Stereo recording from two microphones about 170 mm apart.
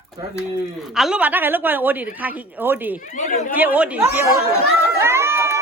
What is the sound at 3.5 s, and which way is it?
Speech, 10° right (ahead or behind).